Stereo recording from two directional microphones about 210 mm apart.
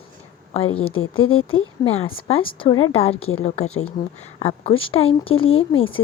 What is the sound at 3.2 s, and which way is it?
Speech, 80° left.